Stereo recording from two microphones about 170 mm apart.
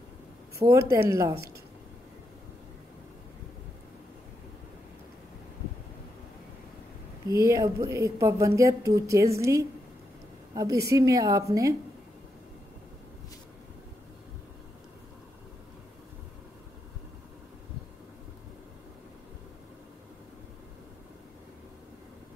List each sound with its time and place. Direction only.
0.6 s a woman's voice: 15° right (ahead or behind)
7.2 s a woman's voice: 20° right (ahead or behind)